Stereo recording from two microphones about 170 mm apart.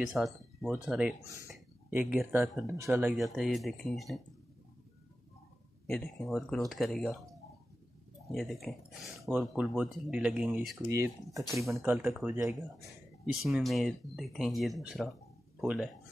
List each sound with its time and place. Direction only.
0.0 s speech: centre (ahead or behind)
2.6 s speech: 15° right (ahead or behind); by 4.2 s centre (ahead or behind)
5.9 s speech: centre (ahead or behind)
8.3 s speech: centre (ahead or behind)
10.9 s speech: 15° right (ahead or behind)